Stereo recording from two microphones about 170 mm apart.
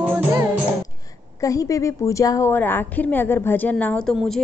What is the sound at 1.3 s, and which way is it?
A woman's voice, 20° left (ahead or behind).